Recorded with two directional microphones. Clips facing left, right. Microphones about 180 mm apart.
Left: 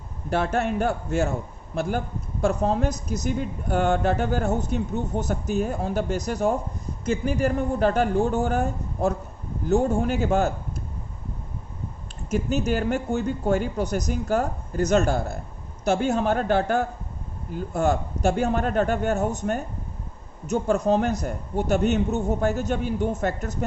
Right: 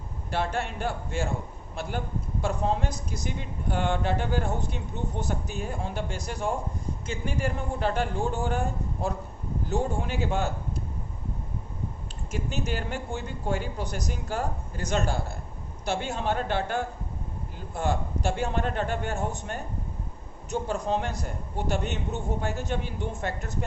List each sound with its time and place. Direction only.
0.3 s speech: 45° left (ahead or behind)
12.3 s speech: 40° left (ahead or behind)